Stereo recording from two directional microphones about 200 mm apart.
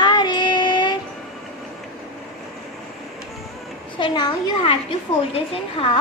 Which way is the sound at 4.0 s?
25° left (ahead or behind).